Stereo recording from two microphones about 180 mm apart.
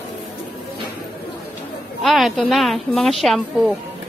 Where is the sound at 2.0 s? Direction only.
Centre (ahead or behind).